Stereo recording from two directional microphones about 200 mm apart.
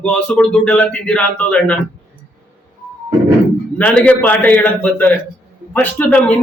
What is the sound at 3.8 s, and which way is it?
A man's voice, 5° left (ahead or behind).